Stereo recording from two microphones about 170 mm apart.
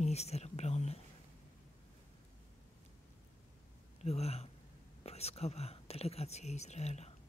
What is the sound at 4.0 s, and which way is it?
Speech, 40° left (ahead or behind).